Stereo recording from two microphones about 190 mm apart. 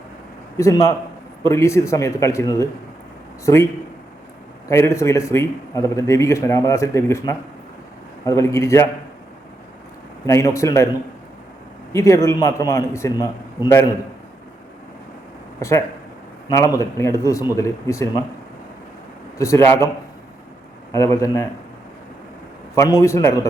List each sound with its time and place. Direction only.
0.5 s a man's voice: 15° left (ahead or behind)
4.7 s a man's voice: 15° left (ahead or behind)
10.2 s a man's voice: 15° left (ahead or behind)
11.9 s a man's voice: 15° left (ahead or behind)
16.5 s a man's voice: 15° left (ahead or behind)
19.4 s a man's voice: 15° left (ahead or behind)
20.9 s a man's voice: 15° left (ahead or behind)
22.7 s a man's voice: 15° left (ahead or behind)